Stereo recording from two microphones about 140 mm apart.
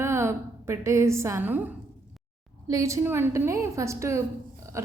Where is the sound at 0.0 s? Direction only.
20° right (ahead or behind).